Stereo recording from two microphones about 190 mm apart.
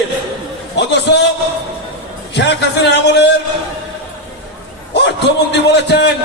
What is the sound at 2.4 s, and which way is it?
Speech, 65° left (ahead or behind).